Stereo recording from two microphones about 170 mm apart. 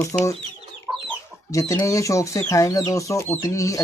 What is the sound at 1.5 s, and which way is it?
Speech, 20° left (ahead or behind).